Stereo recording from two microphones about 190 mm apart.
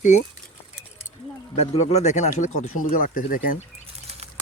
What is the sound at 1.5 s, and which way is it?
Speech, 35° left (ahead or behind).